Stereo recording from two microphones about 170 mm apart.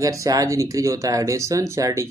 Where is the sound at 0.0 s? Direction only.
20° right (ahead or behind).